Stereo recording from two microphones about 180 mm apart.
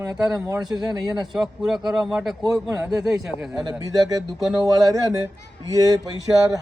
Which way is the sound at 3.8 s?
20° right (ahead or behind).